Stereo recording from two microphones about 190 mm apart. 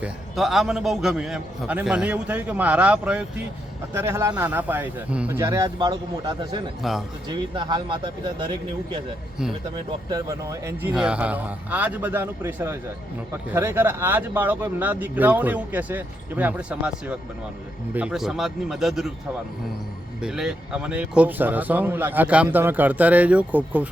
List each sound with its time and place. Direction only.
0.0 s a man's voice: centre (ahead or behind); by 6.6 s 25° right (ahead or behind)
6.8 s a man's voice: centre (ahead or behind)
7.3 s speech: 25° right (ahead or behind)
10.1 s a man's voice: 20° right (ahead or behind); by 19.1 s centre (ahead or behind)
20.2 s speech: 5° right (ahead or behind)